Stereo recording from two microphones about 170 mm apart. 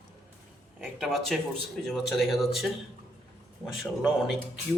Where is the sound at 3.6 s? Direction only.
15° left (ahead or behind).